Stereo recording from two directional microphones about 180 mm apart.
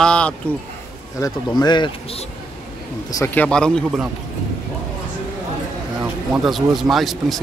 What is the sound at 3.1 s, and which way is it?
Speech, 10° left (ahead or behind).